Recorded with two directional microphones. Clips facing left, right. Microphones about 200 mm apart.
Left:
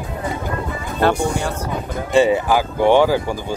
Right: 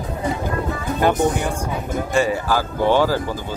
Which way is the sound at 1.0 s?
15° right (ahead or behind).